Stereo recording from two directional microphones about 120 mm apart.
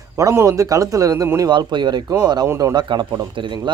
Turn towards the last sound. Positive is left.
turn(degrees=-40)  # may be behind; listen again after turning